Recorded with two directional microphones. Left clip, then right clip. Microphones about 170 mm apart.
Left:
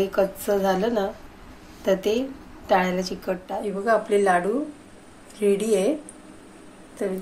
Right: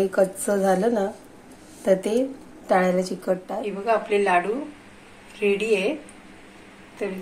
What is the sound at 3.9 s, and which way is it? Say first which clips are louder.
Speech: left 1 dB; 55° left (ahead or behind).